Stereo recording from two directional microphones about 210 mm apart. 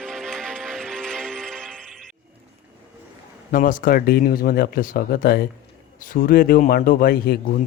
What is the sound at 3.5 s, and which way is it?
A man's voice, 40° left (ahead or behind).